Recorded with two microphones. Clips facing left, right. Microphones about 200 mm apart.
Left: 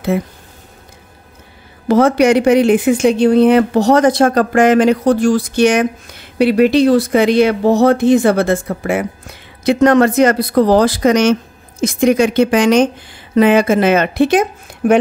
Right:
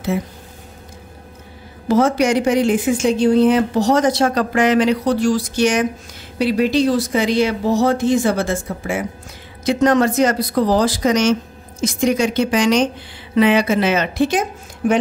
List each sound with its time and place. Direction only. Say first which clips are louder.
1.9 s speech: left 5 dB; 60° left (ahead or behind)